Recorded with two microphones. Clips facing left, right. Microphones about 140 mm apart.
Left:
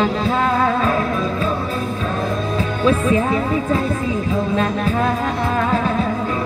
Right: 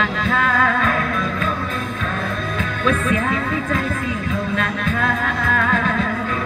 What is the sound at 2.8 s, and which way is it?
Music, 30° left (ahead or behind).